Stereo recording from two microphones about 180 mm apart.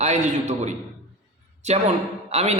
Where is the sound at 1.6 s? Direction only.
35° right (ahead or behind).